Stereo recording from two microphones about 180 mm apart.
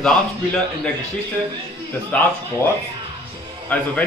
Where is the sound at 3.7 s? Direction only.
5° left (ahead or behind).